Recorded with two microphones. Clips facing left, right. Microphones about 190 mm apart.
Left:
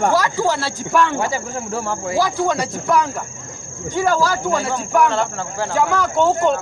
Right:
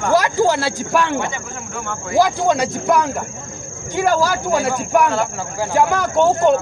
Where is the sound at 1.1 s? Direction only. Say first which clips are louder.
Left 2 dB; 35° left (ahead or behind).